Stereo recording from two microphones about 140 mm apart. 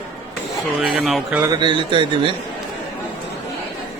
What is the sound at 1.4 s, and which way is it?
Speech, 35° right (ahead or behind).